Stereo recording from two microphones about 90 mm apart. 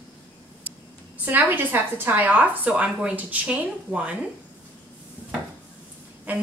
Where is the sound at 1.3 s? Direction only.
20° right (ahead or behind).